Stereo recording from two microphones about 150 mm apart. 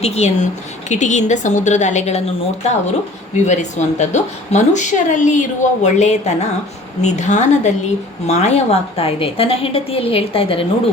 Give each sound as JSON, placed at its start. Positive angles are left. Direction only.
{"t": 0.0, "sound": "a woman's voice", "side_deg": 45}
{"t": 3.3, "sound": "a woman's voice", "side_deg": 50}